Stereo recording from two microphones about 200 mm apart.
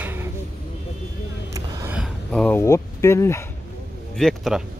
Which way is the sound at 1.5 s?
15° right (ahead or behind).